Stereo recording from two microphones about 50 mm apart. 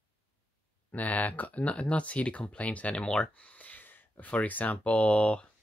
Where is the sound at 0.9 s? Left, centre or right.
Left.